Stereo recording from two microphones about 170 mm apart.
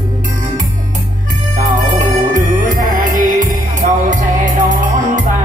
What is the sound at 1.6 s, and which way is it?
Music, 50° right (ahead or behind).